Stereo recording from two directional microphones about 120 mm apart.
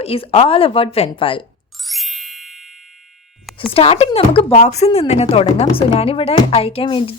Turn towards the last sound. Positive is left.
turn(degrees=45)  # may be behind; listen again after turning